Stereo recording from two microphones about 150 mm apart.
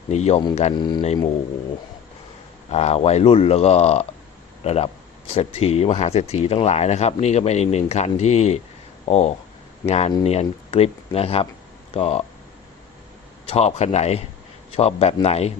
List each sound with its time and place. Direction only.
0.1 s speech: 45° left (ahead or behind)
0.8 s speech: 30° left (ahead or behind)
2.6 s speech: 45° left (ahead or behind)
13.5 s speech: 45° left (ahead or behind)